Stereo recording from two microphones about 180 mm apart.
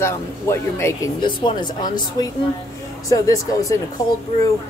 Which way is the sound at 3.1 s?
20° left (ahead or behind).